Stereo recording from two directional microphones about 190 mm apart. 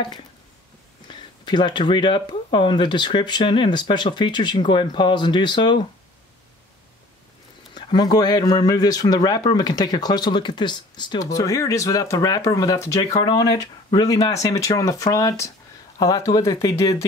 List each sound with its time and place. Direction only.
1.0 s speech: 25° left (ahead or behind)
7.7 s speech: 20° left (ahead or behind)